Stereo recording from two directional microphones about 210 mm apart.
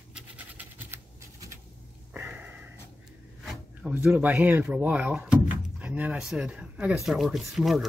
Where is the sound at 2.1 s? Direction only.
10° right (ahead or behind).